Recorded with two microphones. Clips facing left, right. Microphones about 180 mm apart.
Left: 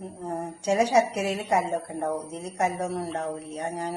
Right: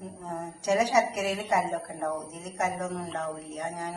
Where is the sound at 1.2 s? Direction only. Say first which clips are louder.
Left 2 dB; 15° left (ahead or behind).